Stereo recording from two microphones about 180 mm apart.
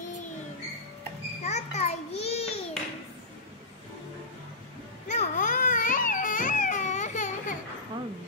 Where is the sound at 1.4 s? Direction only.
40° left (ahead or behind).